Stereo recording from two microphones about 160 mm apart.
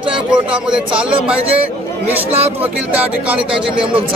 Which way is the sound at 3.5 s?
35° right (ahead or behind).